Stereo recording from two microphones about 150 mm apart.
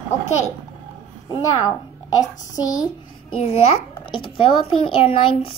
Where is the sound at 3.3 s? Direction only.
40° left (ahead or behind).